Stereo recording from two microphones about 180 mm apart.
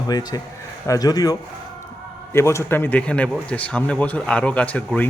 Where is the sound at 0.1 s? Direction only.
20° left (ahead or behind).